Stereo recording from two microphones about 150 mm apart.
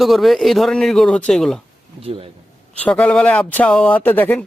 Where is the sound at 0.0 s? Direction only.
Centre (ahead or behind).